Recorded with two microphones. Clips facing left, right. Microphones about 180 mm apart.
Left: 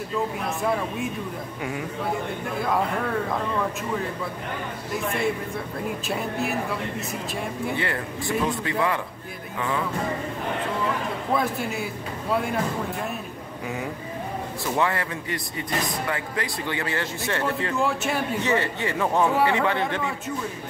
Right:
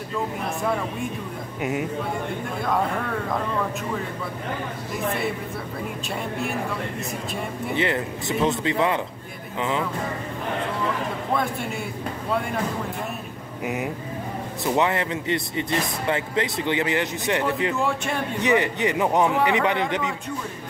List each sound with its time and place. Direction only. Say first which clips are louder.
1.6 s speech: right 6 dB; 20° right (ahead or behind)
6.0 s a man's voice: left 1 dB; 5° left (ahead or behind)
7.7 s speech: right 4 dB; 20° right (ahead or behind)
11.3 s a man's voice: left 2 dB; centre (ahead or behind)
14.6 s speech: right 3 dB; 20° right (ahead or behind)
17.7 s a man's voice: even; centre (ahead or behind)
18.4 s a man's voice: right 3 dB; 15° right (ahead or behind)